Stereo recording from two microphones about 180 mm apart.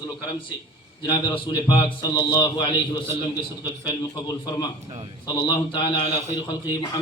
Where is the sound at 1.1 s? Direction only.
25° left (ahead or behind).